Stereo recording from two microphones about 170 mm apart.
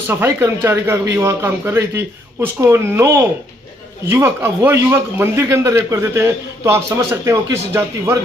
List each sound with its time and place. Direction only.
0.3 s a man's voice: 15° right (ahead or behind)